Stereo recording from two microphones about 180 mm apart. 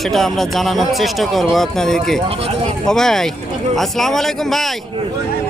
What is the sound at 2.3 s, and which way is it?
Speech, 30° right (ahead or behind).